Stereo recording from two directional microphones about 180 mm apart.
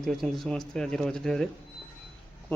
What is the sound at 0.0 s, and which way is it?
A man's voice, centre (ahead or behind).